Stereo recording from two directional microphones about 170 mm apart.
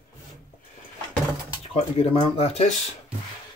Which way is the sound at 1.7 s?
35° left (ahead or behind).